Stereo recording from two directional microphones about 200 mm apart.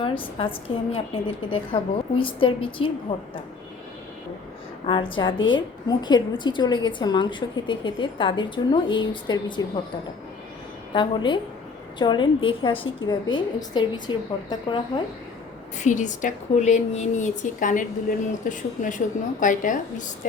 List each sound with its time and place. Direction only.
0.0 s a woman's voice: 25° left (ahead or behind)
4.9 s a woman's voice: 25° left (ahead or behind)
10.9 s a woman's voice: 25° left (ahead or behind)
15.8 s a woman's voice: 40° left (ahead or behind)